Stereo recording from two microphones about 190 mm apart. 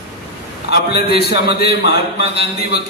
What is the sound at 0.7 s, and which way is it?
A man's voice, 55° left (ahead or behind).